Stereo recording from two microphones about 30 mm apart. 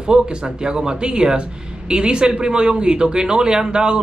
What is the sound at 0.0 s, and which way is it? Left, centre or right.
Speech, right.